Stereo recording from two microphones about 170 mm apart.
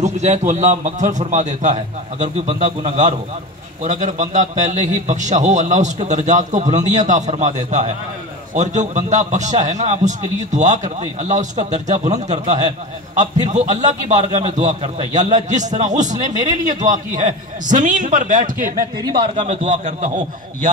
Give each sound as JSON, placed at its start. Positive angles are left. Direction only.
{"t": 0.0, "sound": "a man's voice", "side_deg": -45}
{"t": 19.0, "sound": "a man's voice", "side_deg": -30}